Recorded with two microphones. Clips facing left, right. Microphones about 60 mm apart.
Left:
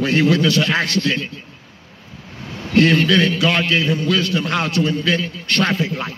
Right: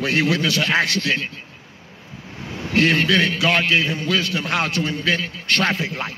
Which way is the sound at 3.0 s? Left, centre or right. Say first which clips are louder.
Left 2 dB; right.